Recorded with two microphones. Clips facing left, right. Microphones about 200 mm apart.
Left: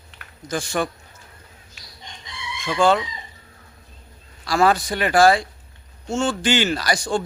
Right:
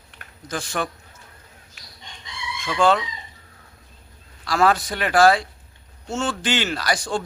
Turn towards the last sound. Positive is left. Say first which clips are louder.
# left 3 dB
turn(degrees=0)  # may be behind; listen again after turning